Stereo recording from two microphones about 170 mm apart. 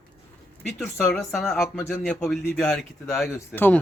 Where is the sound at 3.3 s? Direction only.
10° left (ahead or behind).